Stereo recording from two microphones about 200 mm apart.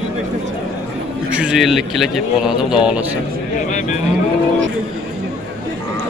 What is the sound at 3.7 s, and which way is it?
Cattle, 40° left (ahead or behind).